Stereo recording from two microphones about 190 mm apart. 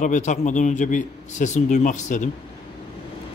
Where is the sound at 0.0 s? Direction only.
40° left (ahead or behind).